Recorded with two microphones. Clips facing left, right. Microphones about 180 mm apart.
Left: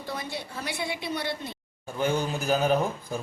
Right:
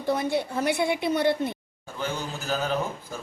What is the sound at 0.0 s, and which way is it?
A woman's voice, 55° right (ahead or behind).